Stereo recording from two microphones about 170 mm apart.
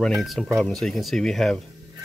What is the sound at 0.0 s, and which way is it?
Speech, centre (ahead or behind).